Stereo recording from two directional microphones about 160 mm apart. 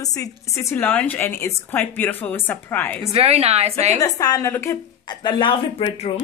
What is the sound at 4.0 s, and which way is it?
Speech, 25° left (ahead or behind).